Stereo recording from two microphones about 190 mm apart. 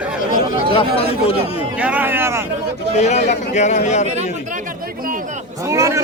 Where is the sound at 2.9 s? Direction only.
35° left (ahead or behind).